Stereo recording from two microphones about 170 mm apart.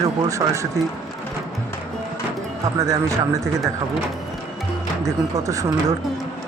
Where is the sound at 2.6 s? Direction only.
20° right (ahead or behind).